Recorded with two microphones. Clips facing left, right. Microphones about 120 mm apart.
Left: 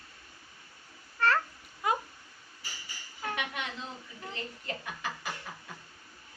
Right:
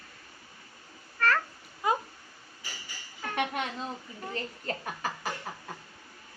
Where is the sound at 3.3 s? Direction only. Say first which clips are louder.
Right 6 dB; 45° right (ahead or behind).